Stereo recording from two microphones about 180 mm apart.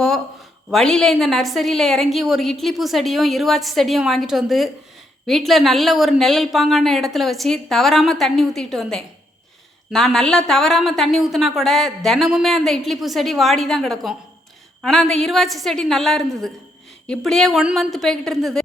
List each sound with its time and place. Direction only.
0.7 s speech: 5° left (ahead or behind)